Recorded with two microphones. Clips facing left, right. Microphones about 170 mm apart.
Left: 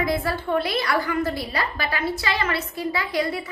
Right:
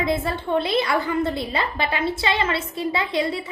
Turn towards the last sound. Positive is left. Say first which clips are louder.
# right 1 dB
turn(degrees=-25)  # may be behind; listen again after turning